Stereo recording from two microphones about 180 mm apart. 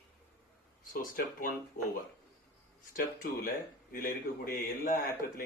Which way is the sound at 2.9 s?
55° left (ahead or behind).